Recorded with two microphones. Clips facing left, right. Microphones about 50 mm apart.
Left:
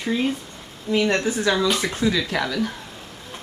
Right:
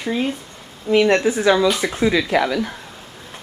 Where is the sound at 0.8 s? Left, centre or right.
Right; by 2.0 s centre.